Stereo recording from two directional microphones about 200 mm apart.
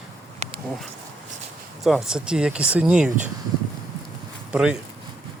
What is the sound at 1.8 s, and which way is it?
Speech, centre (ahead or behind).